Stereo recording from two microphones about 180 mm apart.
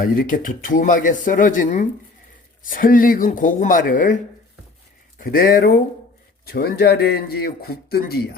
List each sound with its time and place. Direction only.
0.0 s speech: 50° left (ahead or behind)
5.2 s speech: 55° left (ahead or behind)